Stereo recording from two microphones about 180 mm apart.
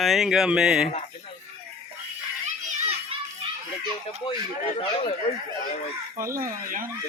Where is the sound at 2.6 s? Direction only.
30° right (ahead or behind).